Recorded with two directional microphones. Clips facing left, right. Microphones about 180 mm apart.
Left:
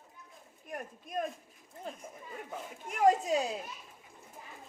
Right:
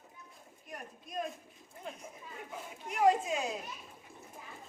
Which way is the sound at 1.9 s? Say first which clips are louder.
Left 2 dB; 35° left (ahead or behind).